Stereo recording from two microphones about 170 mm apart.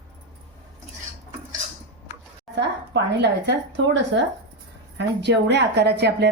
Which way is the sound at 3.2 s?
90° right.